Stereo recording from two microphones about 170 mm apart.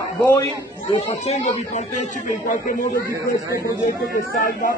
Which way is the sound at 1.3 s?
40° left (ahead or behind).